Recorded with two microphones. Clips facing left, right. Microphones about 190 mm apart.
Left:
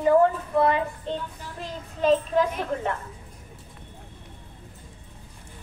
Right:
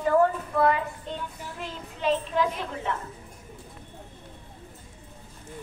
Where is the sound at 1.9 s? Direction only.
40° left (ahead or behind).